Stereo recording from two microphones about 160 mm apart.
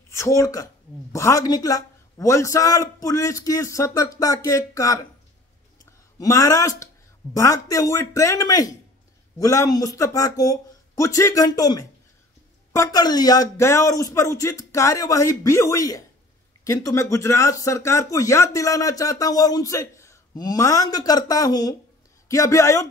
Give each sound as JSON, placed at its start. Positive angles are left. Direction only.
{"t": 0.1, "sound": "speech", "side_deg": 20}
{"t": 6.1, "sound": "speech", "side_deg": 20}